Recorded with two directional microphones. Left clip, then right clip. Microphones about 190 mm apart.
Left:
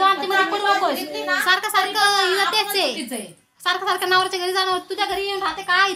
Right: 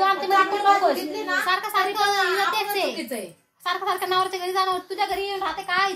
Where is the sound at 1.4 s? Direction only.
25° left (ahead or behind).